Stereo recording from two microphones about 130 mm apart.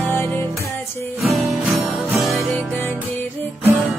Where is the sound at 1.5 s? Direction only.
Centre (ahead or behind).